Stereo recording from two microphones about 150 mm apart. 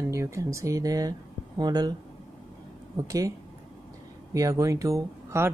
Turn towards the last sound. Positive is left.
turn(degrees=-20)  # may be behind; listen again after turning